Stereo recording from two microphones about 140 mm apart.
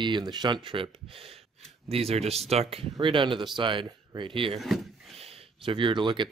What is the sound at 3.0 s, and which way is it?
Speech, 35° right (ahead or behind).